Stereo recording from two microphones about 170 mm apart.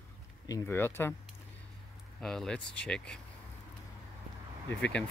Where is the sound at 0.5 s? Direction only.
15° left (ahead or behind).